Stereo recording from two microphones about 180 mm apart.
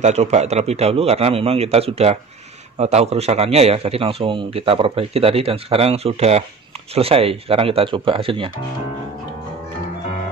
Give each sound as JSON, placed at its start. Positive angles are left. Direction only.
{"t": 0.0, "sound": "a man's voice", "side_deg": -40}